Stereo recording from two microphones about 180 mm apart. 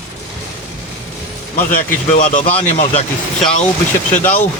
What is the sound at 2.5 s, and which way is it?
Speech, 30° left (ahead or behind).